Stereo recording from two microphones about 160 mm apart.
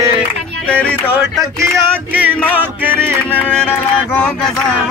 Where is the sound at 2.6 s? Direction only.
10° right (ahead or behind).